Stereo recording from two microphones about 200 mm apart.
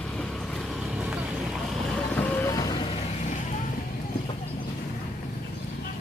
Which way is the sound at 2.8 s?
30° left (ahead or behind).